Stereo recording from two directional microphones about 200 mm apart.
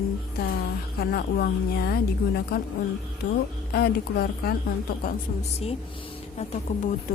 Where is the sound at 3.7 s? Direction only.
50° left (ahead or behind).